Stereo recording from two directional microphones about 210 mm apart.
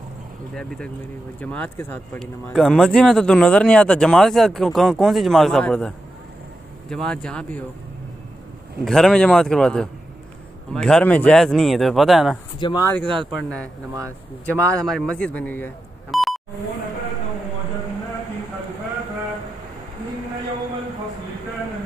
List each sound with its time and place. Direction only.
0.6 s speech: 5° left (ahead or behind)
8.8 s speech: centre (ahead or behind)
12.5 s speech: 20° left (ahead or behind)
13.0 s speech: 25° right (ahead or behind)
13.3 s speech: 5° left (ahead or behind)